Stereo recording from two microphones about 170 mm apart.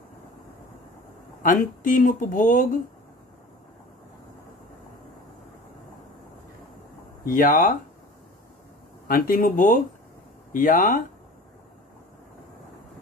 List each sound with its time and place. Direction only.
1.4 s speech: 50° left (ahead or behind)
7.2 s speech: 50° left (ahead or behind)
9.0 s speech: 60° left (ahead or behind)